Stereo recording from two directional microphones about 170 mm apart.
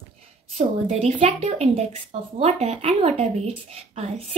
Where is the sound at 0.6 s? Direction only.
40° right (ahead or behind).